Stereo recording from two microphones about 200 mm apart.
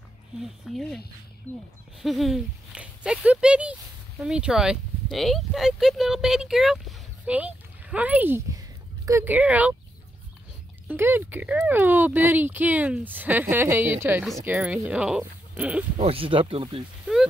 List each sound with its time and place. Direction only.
0.4 s a child's voice: centre (ahead or behind)
10.9 s speech: 10° right (ahead or behind)
16.0 s speech: 30° right (ahead or behind)
17.1 s a sound: 5° right (ahead or behind)